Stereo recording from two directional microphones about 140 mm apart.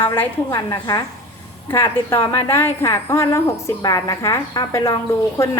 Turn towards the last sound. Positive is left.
turn(degrees=20)  # may be behind; listen again after turning